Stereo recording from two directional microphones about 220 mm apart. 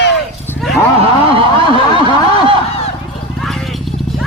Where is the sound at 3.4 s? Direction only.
Centre (ahead or behind).